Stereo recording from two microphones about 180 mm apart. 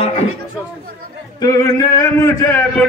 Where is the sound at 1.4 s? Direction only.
20° left (ahead or behind).